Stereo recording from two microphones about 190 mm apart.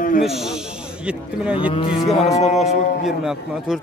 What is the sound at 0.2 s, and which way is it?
A man's voice, centre (ahead or behind).